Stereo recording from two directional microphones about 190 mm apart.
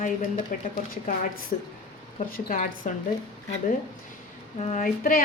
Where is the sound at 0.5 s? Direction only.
45° left (ahead or behind).